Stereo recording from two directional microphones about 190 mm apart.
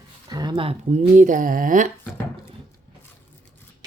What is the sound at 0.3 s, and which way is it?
Speech, 20° right (ahead or behind).